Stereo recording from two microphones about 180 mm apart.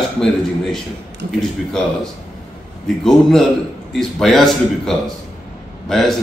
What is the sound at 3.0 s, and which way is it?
A man's voice, centre (ahead or behind).